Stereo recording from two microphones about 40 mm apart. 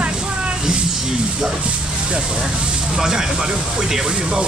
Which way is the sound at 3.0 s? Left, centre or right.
Centre.